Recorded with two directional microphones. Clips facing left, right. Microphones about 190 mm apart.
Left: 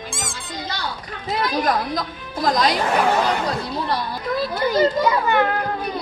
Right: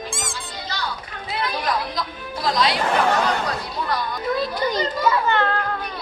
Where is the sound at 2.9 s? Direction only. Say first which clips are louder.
Even; 10° left (ahead or behind).